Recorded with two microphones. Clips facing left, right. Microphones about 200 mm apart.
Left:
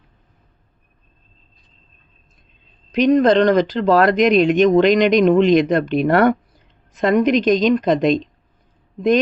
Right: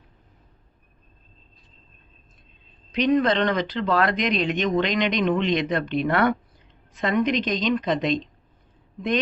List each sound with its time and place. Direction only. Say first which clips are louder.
2.9 s speech: left 7 dB; 45° left (ahead or behind)